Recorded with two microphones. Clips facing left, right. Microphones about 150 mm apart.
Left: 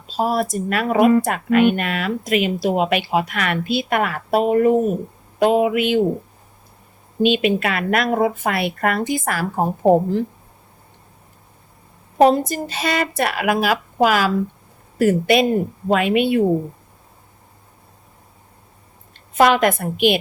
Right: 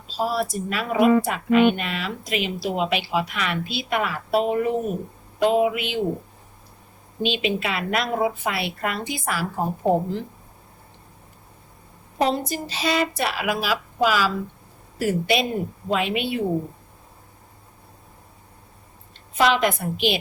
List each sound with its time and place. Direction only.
0.2 s speech: 50° left (ahead or behind)
7.2 s speech: 50° left (ahead or behind)
12.1 s speech: 50° left (ahead or behind)
19.3 s speech: 50° left (ahead or behind)